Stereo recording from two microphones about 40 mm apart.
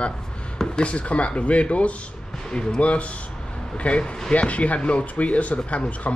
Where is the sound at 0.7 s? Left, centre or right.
Left.